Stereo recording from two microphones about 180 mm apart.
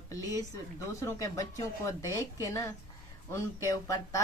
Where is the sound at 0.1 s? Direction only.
20° left (ahead or behind).